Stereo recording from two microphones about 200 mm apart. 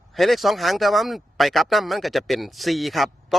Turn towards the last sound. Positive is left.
turn(degrees=0)  # may be behind; listen again after turning